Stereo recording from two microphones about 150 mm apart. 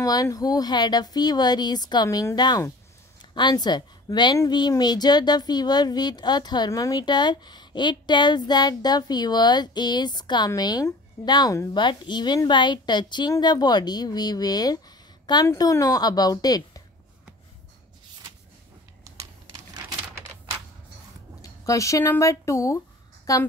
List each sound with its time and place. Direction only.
0.0 s a woman's voice: 25° left (ahead or behind)
19.1 s typing: 20° right (ahead or behind)
21.4 s a woman's voice: 20° left (ahead or behind)